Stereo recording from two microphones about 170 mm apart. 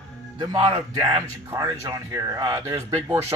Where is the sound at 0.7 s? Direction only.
25° right (ahead or behind).